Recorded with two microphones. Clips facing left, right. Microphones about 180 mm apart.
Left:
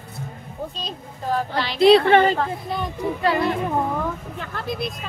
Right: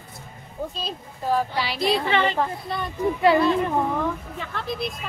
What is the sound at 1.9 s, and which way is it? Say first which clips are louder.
Speech: left 11 dB; 70° left (ahead or behind).